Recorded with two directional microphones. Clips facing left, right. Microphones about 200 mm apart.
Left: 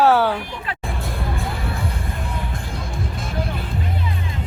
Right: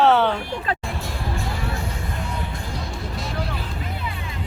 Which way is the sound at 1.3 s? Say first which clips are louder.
Left 1 dB; 55° left (ahead or behind).